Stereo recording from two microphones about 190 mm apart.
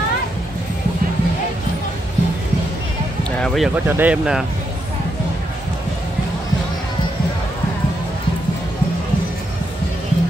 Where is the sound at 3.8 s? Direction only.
10° right (ahead or behind).